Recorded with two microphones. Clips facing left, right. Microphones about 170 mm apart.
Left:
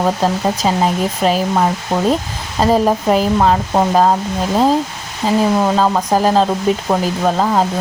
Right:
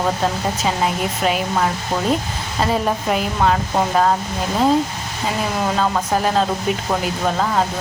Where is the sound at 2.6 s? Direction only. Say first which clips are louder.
Left 6 dB; 35° left (ahead or behind).